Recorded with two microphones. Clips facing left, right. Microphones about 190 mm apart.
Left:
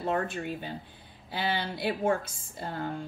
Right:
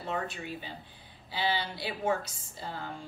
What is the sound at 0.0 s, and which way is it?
A woman's voice, 55° left (ahead or behind).